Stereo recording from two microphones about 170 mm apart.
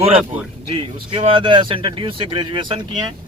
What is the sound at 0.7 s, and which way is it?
Speech, 30° right (ahead or behind).